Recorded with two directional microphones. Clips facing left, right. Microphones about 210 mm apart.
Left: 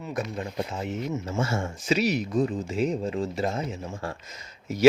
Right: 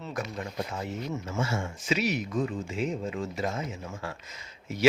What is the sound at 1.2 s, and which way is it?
A man's voice, 40° left (ahead or behind).